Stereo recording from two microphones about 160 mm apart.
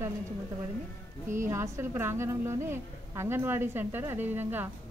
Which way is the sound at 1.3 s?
15° right (ahead or behind).